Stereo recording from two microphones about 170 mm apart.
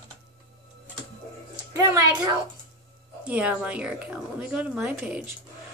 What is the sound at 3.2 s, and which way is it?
A woman's voice, 10° right (ahead or behind).